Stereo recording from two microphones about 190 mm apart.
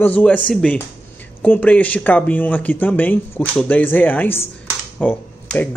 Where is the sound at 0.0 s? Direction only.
10° left (ahead or behind).